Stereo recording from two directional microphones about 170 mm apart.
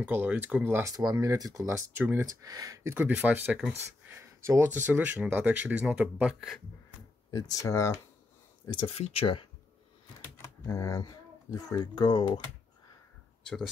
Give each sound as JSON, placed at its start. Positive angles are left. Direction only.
{"t": 0.0, "sound": "speech", "side_deg": -10}
{"t": 7.2, "sound": "speech", "side_deg": 20}
{"t": 8.7, "sound": "speech", "side_deg": 35}
{"t": 10.6, "sound": "speech", "side_deg": 15}